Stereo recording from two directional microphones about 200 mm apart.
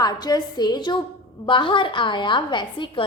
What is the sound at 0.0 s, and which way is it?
A woman's voice, 20° left (ahead or behind).